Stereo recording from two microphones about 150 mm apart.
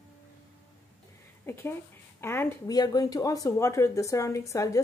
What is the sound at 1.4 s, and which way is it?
A woman's voice, 15° left (ahead or behind).